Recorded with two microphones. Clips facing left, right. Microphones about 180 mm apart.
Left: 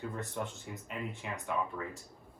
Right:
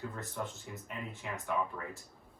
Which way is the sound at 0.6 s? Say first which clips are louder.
Left 3 dB; 15° left (ahead or behind).